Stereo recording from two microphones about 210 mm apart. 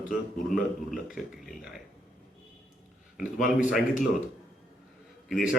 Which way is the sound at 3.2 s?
40° left (ahead or behind).